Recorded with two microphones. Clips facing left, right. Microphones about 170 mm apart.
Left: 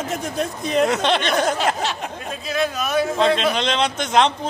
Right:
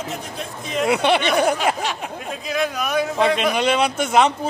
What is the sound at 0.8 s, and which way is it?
A man's voice, 10° right (ahead or behind).